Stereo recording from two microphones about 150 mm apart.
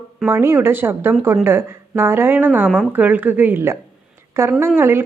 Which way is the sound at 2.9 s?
10° right (ahead or behind).